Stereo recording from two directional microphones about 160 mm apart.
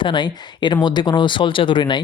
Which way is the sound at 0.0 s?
30° left (ahead or behind).